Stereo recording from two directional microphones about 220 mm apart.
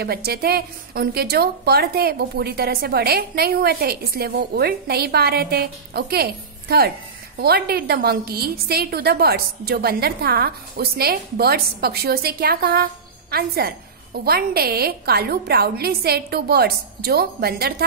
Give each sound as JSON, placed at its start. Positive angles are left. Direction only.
{"t": 0.0, "sound": "a woman's voice", "side_deg": -45}